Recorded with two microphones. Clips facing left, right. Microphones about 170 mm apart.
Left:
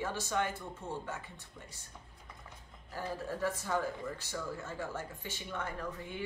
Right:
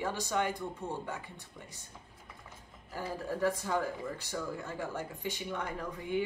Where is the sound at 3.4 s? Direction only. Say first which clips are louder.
Right 2 dB; 15° right (ahead or behind).